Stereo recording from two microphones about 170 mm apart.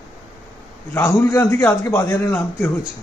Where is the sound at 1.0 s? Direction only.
15° left (ahead or behind).